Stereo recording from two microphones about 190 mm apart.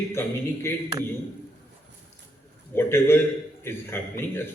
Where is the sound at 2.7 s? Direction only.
10° left (ahead or behind).